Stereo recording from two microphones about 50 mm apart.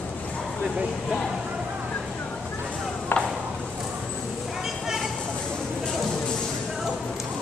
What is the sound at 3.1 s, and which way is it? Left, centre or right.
Clip-clop, left.